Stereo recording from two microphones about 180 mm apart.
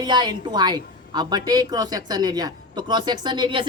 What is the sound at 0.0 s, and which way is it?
Speech, 25° right (ahead or behind).